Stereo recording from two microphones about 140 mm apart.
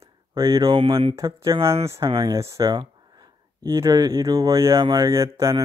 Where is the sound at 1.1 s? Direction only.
20° right (ahead or behind).